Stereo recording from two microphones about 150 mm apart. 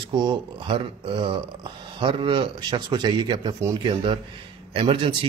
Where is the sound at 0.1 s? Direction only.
30° right (ahead or behind).